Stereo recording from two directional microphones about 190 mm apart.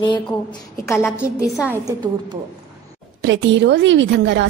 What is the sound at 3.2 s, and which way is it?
A woman's voice, 70° right (ahead or behind).